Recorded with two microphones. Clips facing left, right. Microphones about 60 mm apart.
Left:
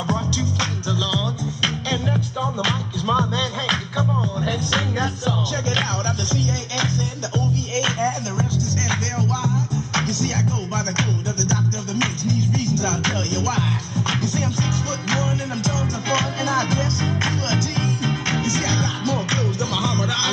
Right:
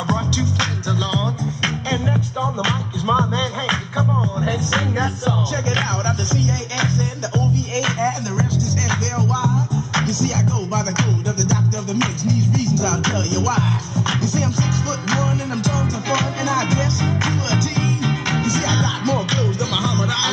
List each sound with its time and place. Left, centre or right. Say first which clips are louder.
1.9 s music: right 2 dB; centre; by 8.1 s right
11.4 s music: right 2 dB; right
14.7 s music: right 2 dB; right
19.3 s music: right 2 dB; left